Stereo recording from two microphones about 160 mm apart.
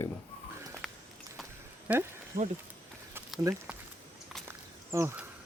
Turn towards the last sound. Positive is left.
turn(degrees=-15)  # may be behind; listen again after turning